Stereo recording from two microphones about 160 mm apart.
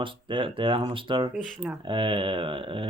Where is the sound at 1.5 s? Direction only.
5° right (ahead or behind).